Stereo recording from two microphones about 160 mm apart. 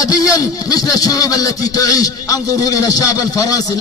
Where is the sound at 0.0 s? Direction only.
20° left (ahead or behind).